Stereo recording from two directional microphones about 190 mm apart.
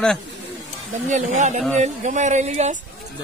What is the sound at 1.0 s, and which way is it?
Speech, 40° right (ahead or behind).